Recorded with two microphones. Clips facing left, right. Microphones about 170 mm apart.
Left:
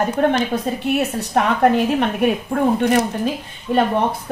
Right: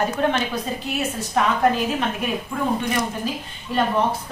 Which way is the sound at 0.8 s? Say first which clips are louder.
Left 6 dB; 60° left (ahead or behind).